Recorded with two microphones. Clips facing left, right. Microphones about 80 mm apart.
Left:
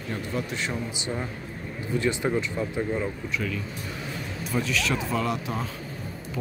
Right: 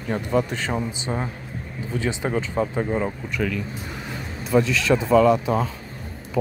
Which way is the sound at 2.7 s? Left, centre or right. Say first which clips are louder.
Right 4 dB; right.